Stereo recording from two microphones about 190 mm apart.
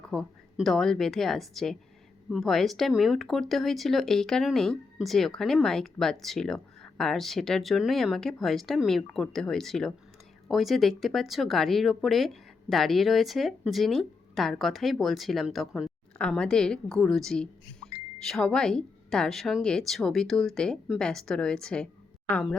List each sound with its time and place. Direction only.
0.1 s speech: centre (ahead or behind)